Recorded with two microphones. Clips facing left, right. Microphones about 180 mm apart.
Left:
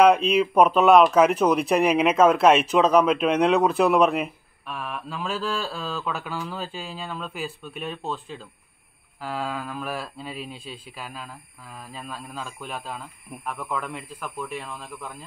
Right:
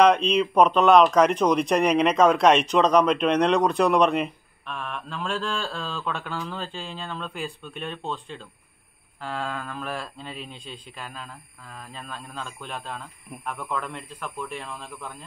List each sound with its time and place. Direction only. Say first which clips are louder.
0.0 s speech: left 1 dB; 5° left (ahead or behind)